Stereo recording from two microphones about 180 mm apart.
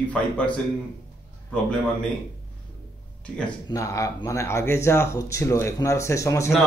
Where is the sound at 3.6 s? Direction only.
20° left (ahead or behind).